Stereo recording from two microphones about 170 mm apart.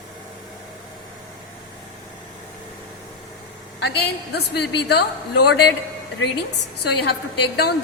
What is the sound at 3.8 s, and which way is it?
A woman's voice, 75° left (ahead or behind).